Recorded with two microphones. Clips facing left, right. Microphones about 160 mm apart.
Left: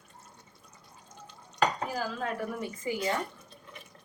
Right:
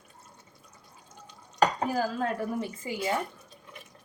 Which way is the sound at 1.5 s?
40° right (ahead or behind).